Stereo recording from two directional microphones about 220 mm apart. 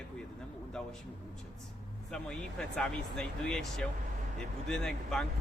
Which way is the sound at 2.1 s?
5° left (ahead or behind).